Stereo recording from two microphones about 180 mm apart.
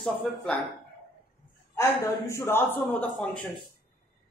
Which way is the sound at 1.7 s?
15° left (ahead or behind).